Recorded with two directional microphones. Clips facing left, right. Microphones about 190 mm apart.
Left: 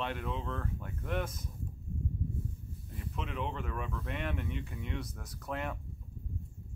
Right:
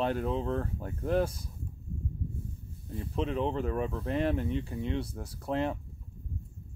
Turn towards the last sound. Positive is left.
turn(degrees=-30)  # may be behind; listen again after turning